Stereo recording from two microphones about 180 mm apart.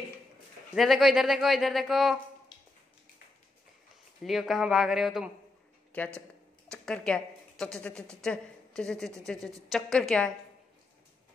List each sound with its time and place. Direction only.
0.7 s speech: centre (ahead or behind)
2.5 s a sound: 25° left (ahead or behind)
4.2 s a woman's voice: centre (ahead or behind)